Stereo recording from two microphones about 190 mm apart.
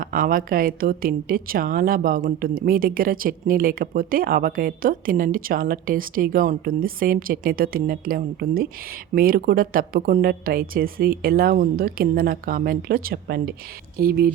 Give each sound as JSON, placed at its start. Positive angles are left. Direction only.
{"t": 0.0, "sound": "a woman's voice", "side_deg": -45}